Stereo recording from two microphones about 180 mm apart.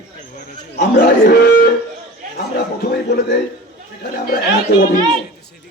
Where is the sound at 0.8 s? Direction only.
60° left (ahead or behind).